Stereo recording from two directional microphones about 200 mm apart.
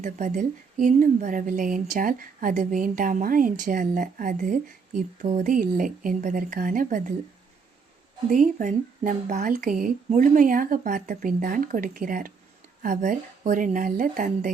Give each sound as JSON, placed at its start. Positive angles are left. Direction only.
{"t": 0.0, "sound": "a woman's voice", "side_deg": -40}
{"t": 8.3, "sound": "a woman's voice", "side_deg": -40}